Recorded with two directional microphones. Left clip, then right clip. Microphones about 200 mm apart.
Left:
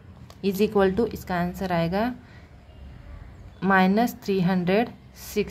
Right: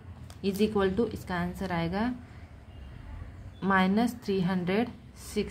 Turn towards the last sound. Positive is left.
turn(degrees=25)  # may be behind; listen again after turning